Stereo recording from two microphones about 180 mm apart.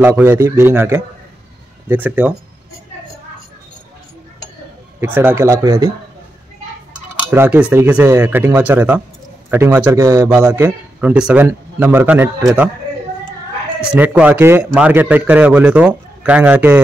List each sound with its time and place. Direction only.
0.0 s a man's voice: 10° right (ahead or behind)
5.0 s a man's voice: 10° right (ahead or behind)
7.2 s a man's voice: 10° right (ahead or behind)
13.7 s a man's voice: 10° right (ahead or behind)